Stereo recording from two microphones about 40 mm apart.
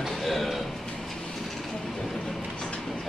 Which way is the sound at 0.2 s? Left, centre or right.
Centre.